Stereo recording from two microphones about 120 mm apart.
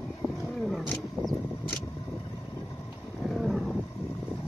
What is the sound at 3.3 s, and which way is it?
Roaring cats, centre (ahead or behind).